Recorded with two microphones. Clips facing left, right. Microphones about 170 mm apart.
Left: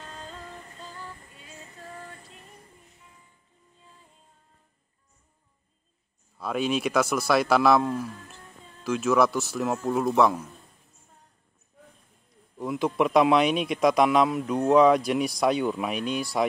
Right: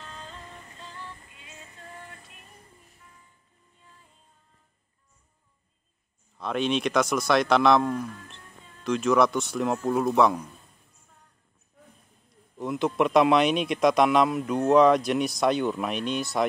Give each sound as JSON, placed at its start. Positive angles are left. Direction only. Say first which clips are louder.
{"t": 0.0, "sound": "music", "louder": "left 2 dB", "side_deg": 40}
{"t": 6.3, "sound": "speech", "louder": "even", "side_deg": 5}
{"t": 12.5, "sound": "speech", "louder": "even", "side_deg": 0}